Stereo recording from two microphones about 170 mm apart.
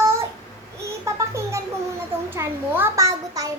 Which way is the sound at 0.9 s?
15° right (ahead or behind).